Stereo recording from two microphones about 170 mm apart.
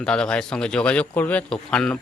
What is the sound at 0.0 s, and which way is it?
Speech, 5° left (ahead or behind).